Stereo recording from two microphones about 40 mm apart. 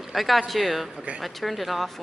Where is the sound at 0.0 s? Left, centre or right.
Centre.